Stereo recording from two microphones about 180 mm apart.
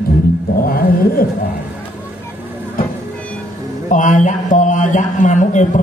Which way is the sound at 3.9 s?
45° left (ahead or behind).